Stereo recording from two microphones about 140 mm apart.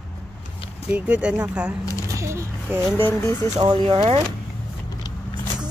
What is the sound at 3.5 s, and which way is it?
Speech, 30° right (ahead or behind).